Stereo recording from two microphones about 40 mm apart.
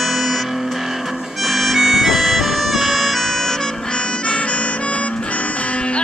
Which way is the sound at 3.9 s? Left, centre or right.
Left.